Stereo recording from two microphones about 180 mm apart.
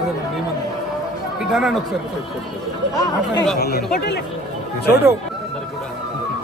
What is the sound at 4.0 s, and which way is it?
Speech, 60° left (ahead or behind).